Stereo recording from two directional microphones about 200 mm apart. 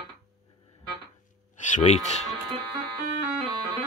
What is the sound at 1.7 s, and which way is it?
Speech, 35° left (ahead or behind).